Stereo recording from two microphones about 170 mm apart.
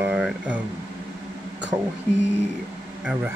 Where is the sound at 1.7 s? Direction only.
20° right (ahead or behind).